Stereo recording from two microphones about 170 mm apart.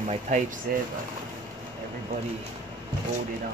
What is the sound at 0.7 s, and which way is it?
Speech, 55° right (ahead or behind).